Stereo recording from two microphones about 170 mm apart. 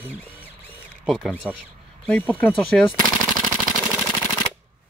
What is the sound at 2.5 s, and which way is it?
Speech, centre (ahead or behind).